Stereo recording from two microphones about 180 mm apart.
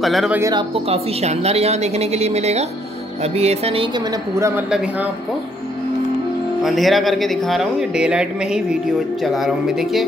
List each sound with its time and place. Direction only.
0.0 s speech: centre (ahead or behind)
0.4 s speech: 25° right (ahead or behind)
4.4 s speech: 15° right (ahead or behind)
6.6 s speech: centre (ahead or behind)